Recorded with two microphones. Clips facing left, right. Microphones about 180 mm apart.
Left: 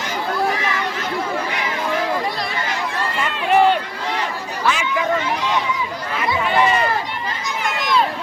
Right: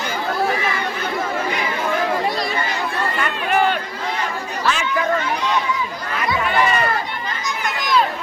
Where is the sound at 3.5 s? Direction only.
25° left (ahead or behind).